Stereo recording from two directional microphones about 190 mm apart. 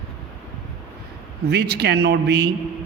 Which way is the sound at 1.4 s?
60° right (ahead or behind).